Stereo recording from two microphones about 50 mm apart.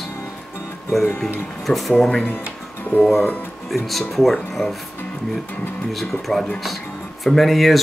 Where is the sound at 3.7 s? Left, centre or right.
Centre.